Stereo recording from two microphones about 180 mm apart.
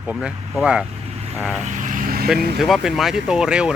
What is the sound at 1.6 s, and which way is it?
Vehicle, 45° right (ahead or behind).